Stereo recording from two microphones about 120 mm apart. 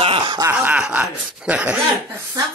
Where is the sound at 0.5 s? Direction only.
10° right (ahead or behind).